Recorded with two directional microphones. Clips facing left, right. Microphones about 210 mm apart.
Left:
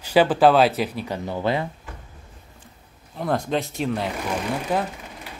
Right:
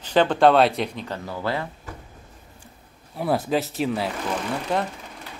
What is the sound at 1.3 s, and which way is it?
Speech, 20° left (ahead or behind).